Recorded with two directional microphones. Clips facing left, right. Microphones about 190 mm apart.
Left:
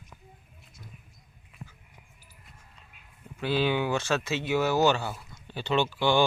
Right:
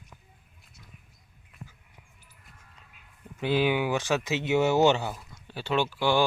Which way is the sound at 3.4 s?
15° right (ahead or behind).